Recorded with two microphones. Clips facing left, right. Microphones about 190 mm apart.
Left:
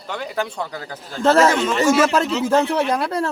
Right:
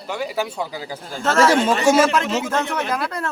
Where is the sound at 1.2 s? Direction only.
35° left (ahead or behind).